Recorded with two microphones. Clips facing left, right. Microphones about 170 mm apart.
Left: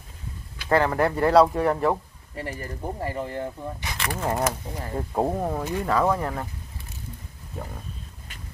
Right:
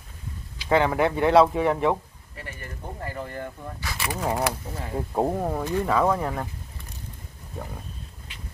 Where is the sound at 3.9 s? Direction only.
5° right (ahead or behind).